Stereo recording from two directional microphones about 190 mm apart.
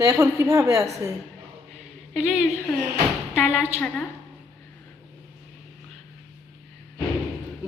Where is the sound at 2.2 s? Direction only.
5° right (ahead or behind).